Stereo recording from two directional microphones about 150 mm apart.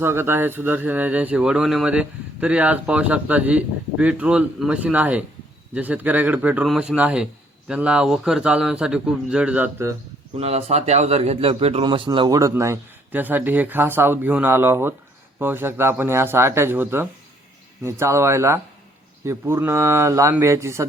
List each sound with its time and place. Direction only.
0.0 s speech: 15° right (ahead or behind)
10.3 s a man's voice: 45° right (ahead or behind); by 20.8 s 20° right (ahead or behind)